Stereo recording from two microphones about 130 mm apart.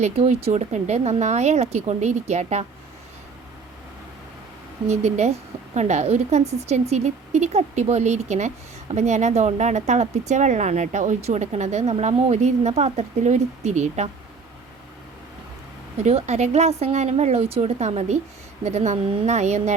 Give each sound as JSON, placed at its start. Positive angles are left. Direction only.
{"t": 0.0, "sound": "a woman's voice", "side_deg": -55}
{"t": 4.9, "sound": "a woman's voice", "side_deg": -60}
{"t": 16.0, "sound": "a woman's voice", "side_deg": -60}